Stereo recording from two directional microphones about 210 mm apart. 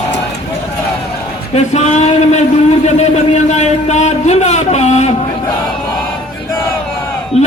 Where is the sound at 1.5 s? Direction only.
30° left (ahead or behind).